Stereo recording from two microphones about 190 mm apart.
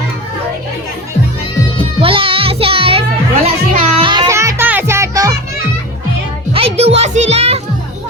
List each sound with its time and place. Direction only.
2.0 s music: 30° right (ahead or behind)
6.5 s music: 30° right (ahead or behind)